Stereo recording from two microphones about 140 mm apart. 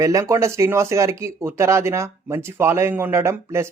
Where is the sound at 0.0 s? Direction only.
25° right (ahead or behind).